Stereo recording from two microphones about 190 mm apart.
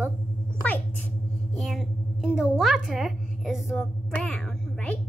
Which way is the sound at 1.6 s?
Centre (ahead or behind).